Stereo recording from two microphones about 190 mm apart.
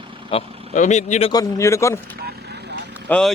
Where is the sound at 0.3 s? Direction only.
35° left (ahead or behind).